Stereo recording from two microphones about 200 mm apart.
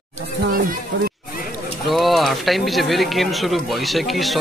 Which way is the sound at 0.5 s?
50° right (ahead or behind).